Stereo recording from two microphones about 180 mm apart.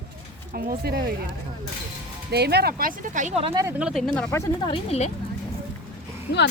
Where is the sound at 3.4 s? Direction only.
30° right (ahead or behind).